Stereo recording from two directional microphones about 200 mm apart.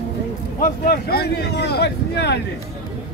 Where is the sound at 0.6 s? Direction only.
45° left (ahead or behind).